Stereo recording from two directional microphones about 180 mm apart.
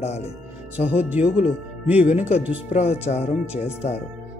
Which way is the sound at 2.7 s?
40° left (ahead or behind).